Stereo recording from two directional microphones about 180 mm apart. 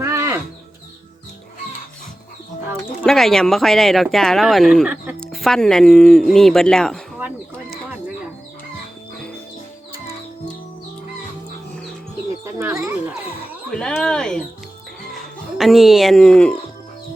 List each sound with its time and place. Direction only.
0.0 s music: 15° right (ahead or behind)
3.0 s speech: centre (ahead or behind)
12.5 s a sound: 15° right (ahead or behind)
13.7 s speech: 5° left (ahead or behind)
15.5 s speech: centre (ahead or behind)